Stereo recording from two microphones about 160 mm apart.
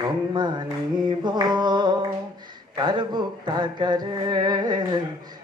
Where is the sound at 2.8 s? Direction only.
25° right (ahead or behind).